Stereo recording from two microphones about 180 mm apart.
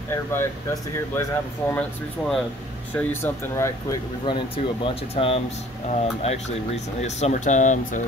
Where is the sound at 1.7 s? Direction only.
5° left (ahead or behind).